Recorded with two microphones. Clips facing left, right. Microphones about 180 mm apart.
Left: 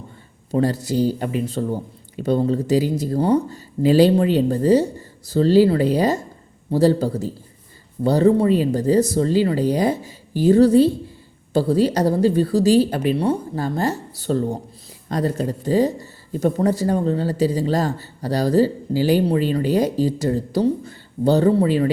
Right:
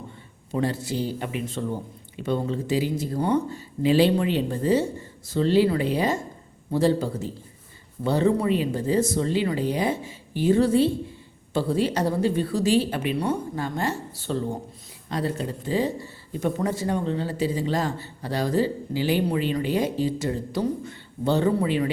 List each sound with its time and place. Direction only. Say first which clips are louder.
0.5 s speech: left 6 dB; 40° left (ahead or behind)